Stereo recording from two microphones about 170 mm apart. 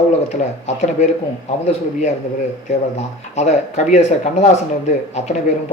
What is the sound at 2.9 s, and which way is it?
A man's voice, 40° left (ahead or behind).